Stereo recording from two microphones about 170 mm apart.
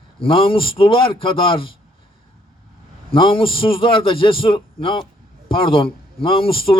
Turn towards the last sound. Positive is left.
turn(degrees=30)  # may be behind; listen again after turning